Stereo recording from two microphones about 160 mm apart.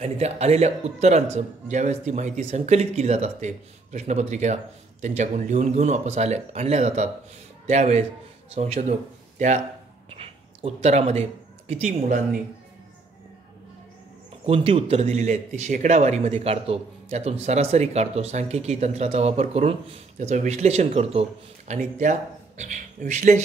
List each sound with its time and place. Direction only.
0.0 s speech: 40° right (ahead or behind)
10.0 s speech: 35° right (ahead or behind); by 12.4 s 50° right (ahead or behind)
14.4 s speech: 35° right (ahead or behind)